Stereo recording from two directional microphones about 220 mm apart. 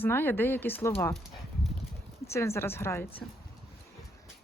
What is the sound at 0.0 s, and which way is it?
Speech, 10° left (ahead or behind).